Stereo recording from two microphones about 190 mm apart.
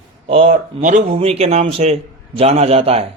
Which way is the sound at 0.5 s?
45° right (ahead or behind).